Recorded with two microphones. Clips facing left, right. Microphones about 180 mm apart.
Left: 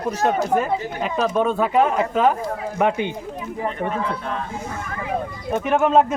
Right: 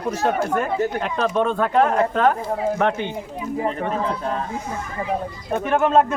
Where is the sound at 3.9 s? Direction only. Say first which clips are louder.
Right 2 dB; 35° right (ahead or behind).